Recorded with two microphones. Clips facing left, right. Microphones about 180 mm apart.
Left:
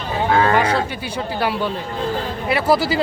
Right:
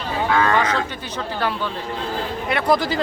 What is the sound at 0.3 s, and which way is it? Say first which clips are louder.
Cattle: left 3 dB; 30° left (ahead or behind).